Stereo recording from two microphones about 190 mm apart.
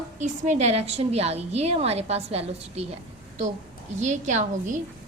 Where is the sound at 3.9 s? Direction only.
40° right (ahead or behind).